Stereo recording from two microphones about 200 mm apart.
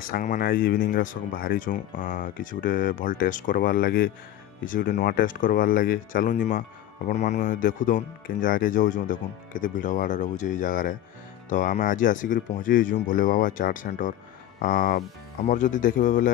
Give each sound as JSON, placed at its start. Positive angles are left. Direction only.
{"t": 0.0, "sound": "speech", "side_deg": 45}